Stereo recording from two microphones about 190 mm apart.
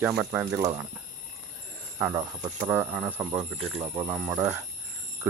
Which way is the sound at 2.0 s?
10° right (ahead or behind).